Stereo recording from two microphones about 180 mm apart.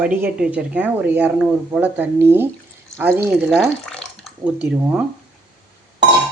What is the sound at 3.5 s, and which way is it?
Speech, 5° left (ahead or behind).